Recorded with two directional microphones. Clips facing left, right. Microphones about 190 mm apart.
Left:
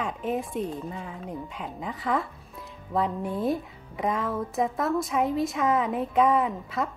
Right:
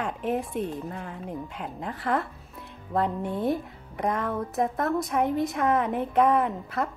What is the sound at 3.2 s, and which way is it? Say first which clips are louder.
Speech: even; 25° right (ahead or behind).